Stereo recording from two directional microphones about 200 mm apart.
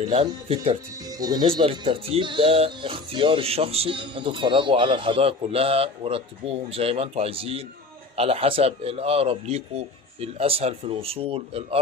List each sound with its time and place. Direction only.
0.1 s speech: 30° right (ahead or behind)